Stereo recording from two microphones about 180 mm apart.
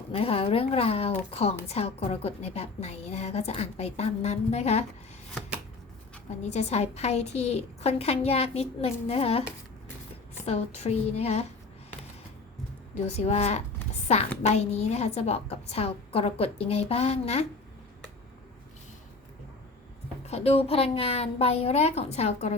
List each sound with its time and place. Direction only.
0.1 s a woman's voice: 30° left (ahead or behind)
6.4 s a woman's voice: 40° left (ahead or behind)
10.4 s a woman's voice: 35° left (ahead or behind)
13.1 s a woman's voice: 35° left (ahead or behind)
20.2 s a woman's voice: 35° left (ahead or behind)